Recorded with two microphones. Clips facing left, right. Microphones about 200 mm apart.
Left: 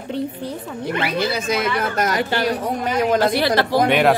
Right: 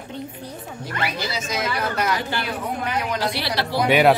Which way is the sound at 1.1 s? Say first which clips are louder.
Left 7 dB; 60° left (ahead or behind).